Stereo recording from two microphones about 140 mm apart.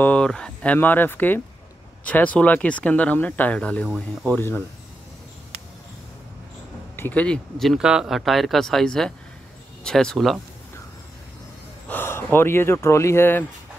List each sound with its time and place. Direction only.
0.0 s speech: 5° left (ahead or behind)
4.4 s speech: 15° left (ahead or behind)
7.0 s speech: 10° left (ahead or behind)
11.9 s speech: 15° left (ahead or behind)